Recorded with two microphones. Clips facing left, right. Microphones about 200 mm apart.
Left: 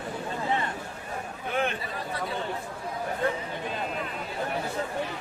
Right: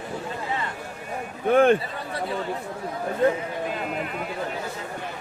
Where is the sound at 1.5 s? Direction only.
50° right (ahead or behind).